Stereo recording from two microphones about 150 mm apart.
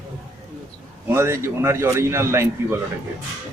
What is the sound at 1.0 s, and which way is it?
A man's voice, 15° right (ahead or behind).